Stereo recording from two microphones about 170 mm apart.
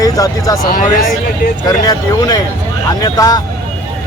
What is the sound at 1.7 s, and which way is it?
Speech, 20° left (ahead or behind).